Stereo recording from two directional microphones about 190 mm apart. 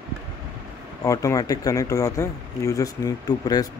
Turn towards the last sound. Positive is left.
turn(degrees=20)  # may be behind; listen again after turning